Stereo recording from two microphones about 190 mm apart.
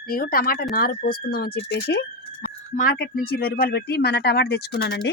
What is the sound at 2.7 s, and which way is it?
Speech, 45° left (ahead or behind).